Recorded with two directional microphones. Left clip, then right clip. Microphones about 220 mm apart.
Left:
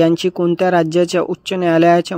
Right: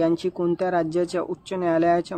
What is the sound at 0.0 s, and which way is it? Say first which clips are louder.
Speech: left 8 dB; 35° left (ahead or behind).